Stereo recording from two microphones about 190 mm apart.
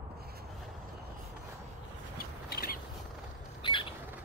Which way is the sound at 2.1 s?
55° left (ahead or behind).